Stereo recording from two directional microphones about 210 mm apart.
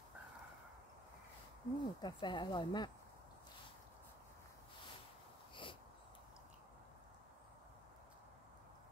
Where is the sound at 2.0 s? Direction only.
20° left (ahead or behind).